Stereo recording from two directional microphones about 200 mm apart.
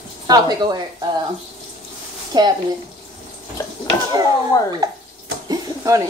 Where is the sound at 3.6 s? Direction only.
15° left (ahead or behind).